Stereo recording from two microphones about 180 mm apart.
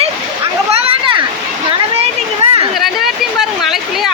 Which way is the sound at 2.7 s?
Centre (ahead or behind).